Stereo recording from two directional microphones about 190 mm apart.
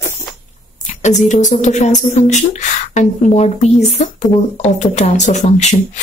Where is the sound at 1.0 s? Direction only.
40° left (ahead or behind).